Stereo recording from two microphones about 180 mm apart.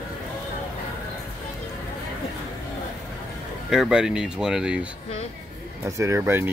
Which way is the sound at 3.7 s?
5° right (ahead or behind).